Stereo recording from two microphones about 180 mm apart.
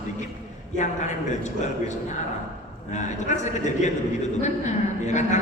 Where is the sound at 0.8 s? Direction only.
40° left (ahead or behind).